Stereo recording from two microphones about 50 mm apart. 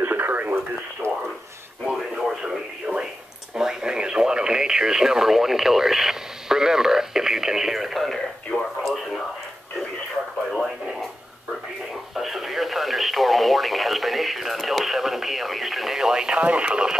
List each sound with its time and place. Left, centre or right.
0.0 s radio: right
1.0 s radio: right
1.9 s radio: centre
2.9 s a sound: right
3.5 s radio: centre
8.8 s a sound: centre
10.5 s radio: centre
12.2 s radio: centre